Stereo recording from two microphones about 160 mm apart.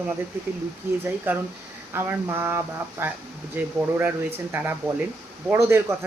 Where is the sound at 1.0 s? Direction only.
15° right (ahead or behind).